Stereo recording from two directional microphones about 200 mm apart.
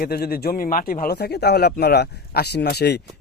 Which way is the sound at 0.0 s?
50° left (ahead or behind).